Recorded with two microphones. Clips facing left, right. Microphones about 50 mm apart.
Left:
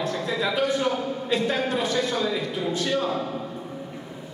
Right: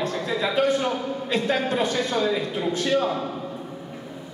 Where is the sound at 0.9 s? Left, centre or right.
Centre.